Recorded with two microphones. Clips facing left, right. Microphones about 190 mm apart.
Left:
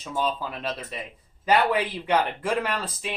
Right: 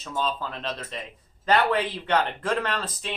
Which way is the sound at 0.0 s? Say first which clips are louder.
Left 1 dB; 10° left (ahead or behind).